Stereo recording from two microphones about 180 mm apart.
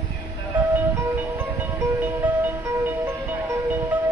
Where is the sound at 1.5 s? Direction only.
10° right (ahead or behind).